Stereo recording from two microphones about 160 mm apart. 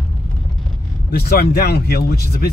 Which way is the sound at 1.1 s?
70° left (ahead or behind).